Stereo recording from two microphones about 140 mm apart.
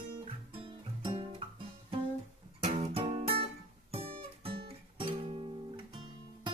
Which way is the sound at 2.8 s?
45° right (ahead or behind).